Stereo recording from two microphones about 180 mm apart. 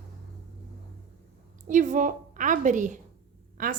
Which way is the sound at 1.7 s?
45° right (ahead or behind).